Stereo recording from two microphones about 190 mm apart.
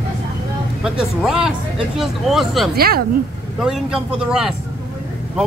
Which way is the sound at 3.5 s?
Centre (ahead or behind).